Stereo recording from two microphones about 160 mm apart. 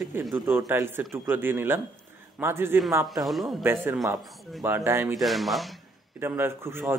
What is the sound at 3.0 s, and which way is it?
Speech, centre (ahead or behind).